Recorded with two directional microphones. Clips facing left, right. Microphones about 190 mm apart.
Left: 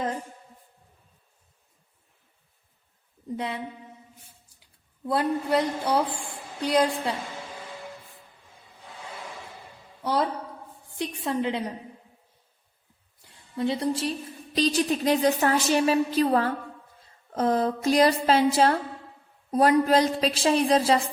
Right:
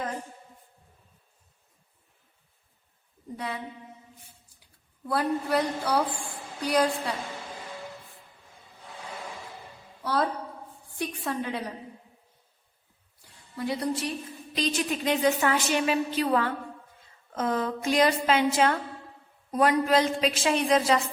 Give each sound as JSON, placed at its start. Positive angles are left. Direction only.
{"t": 3.3, "sound": "speech", "side_deg": 25}
{"t": 5.0, "sound": "speech", "side_deg": 20}
{"t": 10.0, "sound": "a sound", "side_deg": 20}
{"t": 10.9, "sound": "speech", "side_deg": 25}
{"t": 13.2, "sound": "a woman's voice", "side_deg": 25}